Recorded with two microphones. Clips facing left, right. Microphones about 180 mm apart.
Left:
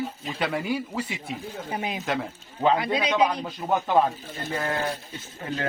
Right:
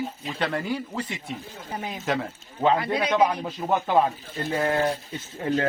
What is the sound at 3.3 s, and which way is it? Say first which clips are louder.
Speech: right 1 dB; 5° right (ahead or behind).